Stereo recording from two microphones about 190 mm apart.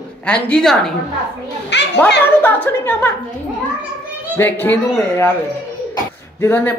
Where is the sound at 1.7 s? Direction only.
65° left (ahead or behind).